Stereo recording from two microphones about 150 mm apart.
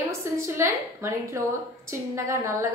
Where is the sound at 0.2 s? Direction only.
20° right (ahead or behind).